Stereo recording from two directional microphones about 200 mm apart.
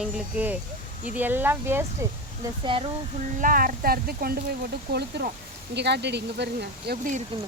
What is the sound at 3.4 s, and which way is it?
Speech, 45° right (ahead or behind).